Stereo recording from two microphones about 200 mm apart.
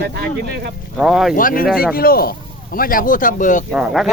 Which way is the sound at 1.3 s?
45° left (ahead or behind).